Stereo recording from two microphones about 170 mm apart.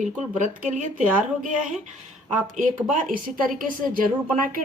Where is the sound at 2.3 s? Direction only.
50° right (ahead or behind).